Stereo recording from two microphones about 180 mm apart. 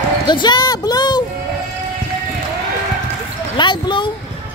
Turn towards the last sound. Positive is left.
turn(degrees=25)  # may be behind; listen again after turning